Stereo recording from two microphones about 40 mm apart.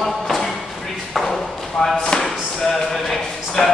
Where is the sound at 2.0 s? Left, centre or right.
Centre.